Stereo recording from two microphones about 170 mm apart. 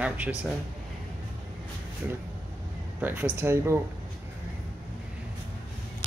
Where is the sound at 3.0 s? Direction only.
10° right (ahead or behind).